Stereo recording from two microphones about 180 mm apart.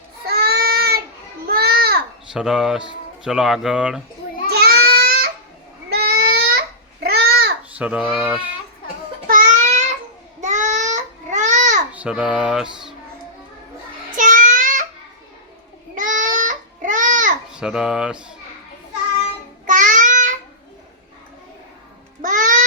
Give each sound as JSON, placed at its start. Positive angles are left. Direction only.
{"t": 0.3, "sound": "child singing", "side_deg": -60}
{"t": 1.5, "sound": "a sound", "side_deg": -55}
{"t": 2.3, "sound": "speech", "side_deg": 0}
{"t": 4.4, "sound": "babbling", "side_deg": -60}
{"t": 5.9, "sound": "a sound", "side_deg": -60}
{"t": 7.0, "sound": "babbling", "side_deg": -60}
{"t": 7.8, "sound": "a child's voice", "side_deg": -5}
{"t": 9.2, "sound": "babbling", "side_deg": -50}
{"t": 11.9, "sound": "speech", "side_deg": -5}
{"t": 14.2, "sound": "child singing", "side_deg": -45}
{"t": 16.0, "sound": "a sound", "side_deg": -45}
{"t": 17.5, "sound": "speech", "side_deg": -5}
{"t": 19.6, "sound": "child singing", "side_deg": -45}
{"t": 22.2, "sound": "babbling", "side_deg": -45}